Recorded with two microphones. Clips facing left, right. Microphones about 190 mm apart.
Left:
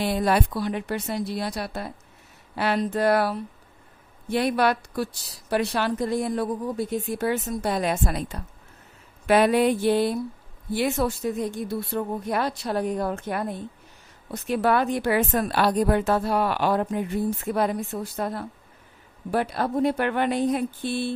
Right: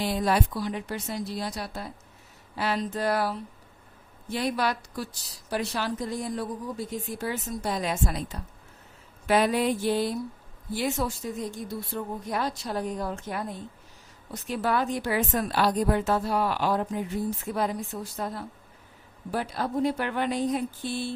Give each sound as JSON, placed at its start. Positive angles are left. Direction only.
{"t": 0.0, "sound": "a woman's voice", "side_deg": 60}